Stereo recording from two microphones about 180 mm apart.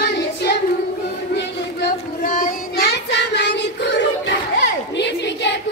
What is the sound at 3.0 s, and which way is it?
Child singing, 75° left (ahead or behind).